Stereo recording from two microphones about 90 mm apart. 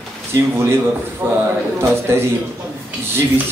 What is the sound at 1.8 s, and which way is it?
Speech, 30° right (ahead or behind).